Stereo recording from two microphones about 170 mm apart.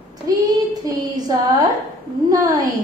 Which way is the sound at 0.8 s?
25° right (ahead or behind).